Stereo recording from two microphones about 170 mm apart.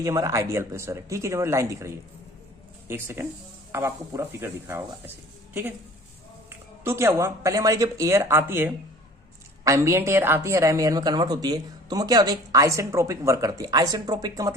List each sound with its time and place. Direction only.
0.0 s speech: 20° right (ahead or behind)
6.5 s a woman's voice: 15° right (ahead or behind)